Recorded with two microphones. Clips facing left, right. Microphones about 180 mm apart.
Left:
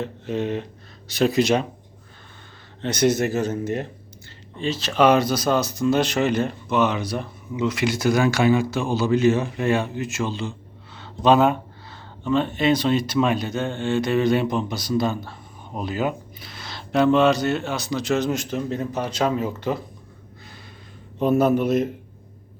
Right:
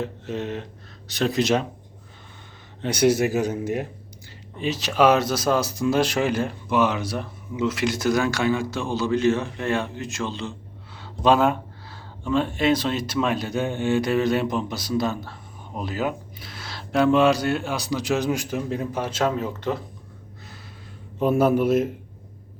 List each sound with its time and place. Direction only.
0.0 s speech: centre (ahead or behind)
2.8 s speech: 10° right (ahead or behind)
21.2 s speech: 5° right (ahead or behind)